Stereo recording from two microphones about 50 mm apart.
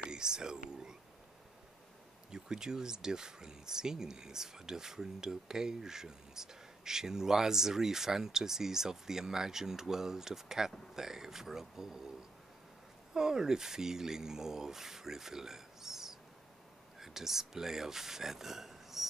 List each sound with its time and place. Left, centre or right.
0.0 s whispering: centre
2.3 s speech: centre
13.1 s speech: centre